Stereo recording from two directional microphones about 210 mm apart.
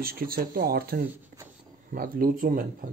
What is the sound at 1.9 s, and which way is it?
Speech, 40° right (ahead or behind).